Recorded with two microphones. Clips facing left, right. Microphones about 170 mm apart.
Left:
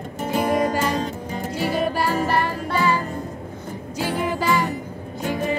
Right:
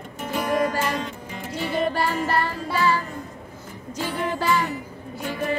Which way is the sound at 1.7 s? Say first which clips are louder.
Right 1 dB; 5° left (ahead or behind).